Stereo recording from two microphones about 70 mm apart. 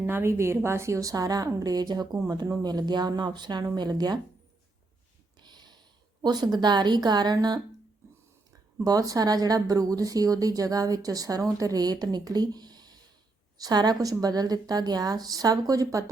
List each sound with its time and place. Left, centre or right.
0.0 s a woman's voice: right
5.4 s a sound: right
6.2 s a woman's voice: right
8.8 s a woman's voice: right